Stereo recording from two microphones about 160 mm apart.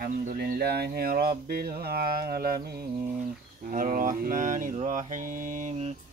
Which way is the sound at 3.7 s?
55° right (ahead or behind).